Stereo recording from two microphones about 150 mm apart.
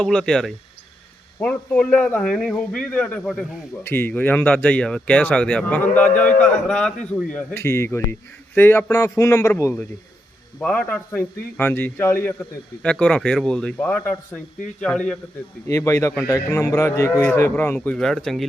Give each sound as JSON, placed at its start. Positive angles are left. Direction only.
{"t": 0.0, "sound": "speech", "side_deg": 5}
{"t": 7.5, "sound": "a man's voice", "side_deg": 20}
{"t": 15.6, "sound": "speech", "side_deg": 20}